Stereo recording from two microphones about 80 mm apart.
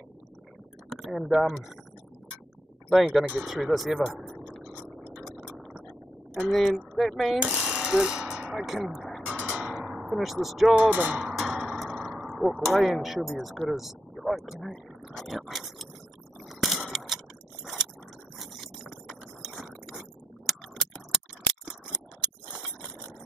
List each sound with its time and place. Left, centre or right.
0.8 s speech: centre
2.9 s speech: centre
4.4 s a sound: centre
6.5 s speech: centre
7.3 s jackhammer: centre
8.8 s speech: centre
9.2 s music: centre
10.7 s speech: centre
11.2 s a sound: centre
13.4 s speech: centre
16.4 s a sound: centre
18.4 s a sound: centre